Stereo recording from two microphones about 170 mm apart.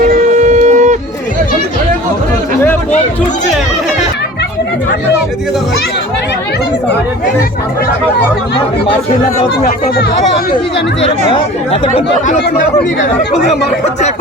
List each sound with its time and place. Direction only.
0.0 s shofar: 50° right (ahead or behind)
11.3 s speech: 35° left (ahead or behind)